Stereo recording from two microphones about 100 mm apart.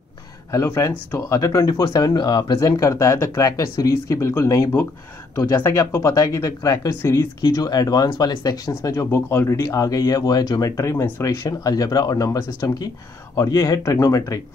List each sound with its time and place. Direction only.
0.5 s speech: 30° left (ahead or behind)
2.6 s speech: 30° left (ahead or behind)
7.4 s speech: 40° left (ahead or behind)
8.9 s speech: 25° left (ahead or behind)